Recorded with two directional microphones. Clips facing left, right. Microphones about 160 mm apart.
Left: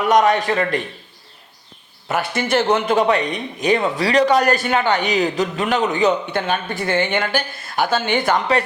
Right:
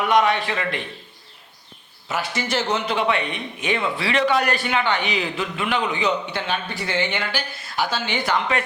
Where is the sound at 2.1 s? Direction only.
55° left (ahead or behind).